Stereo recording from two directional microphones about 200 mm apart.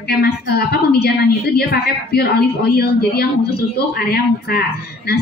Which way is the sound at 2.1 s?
55° left (ahead or behind).